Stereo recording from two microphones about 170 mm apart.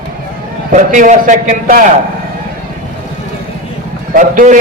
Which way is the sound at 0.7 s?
50° right (ahead or behind).